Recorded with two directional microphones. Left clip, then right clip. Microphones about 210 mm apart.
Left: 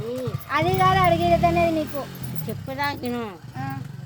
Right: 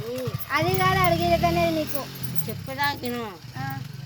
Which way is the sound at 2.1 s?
55° left (ahead or behind).